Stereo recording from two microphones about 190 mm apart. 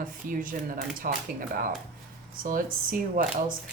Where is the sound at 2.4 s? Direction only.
45° right (ahead or behind).